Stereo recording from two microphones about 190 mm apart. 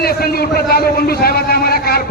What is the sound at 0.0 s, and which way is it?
A man's voice, 55° left (ahead or behind).